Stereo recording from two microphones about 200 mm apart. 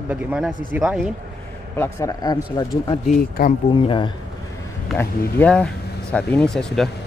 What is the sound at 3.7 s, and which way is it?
Speech, 25° left (ahead or behind).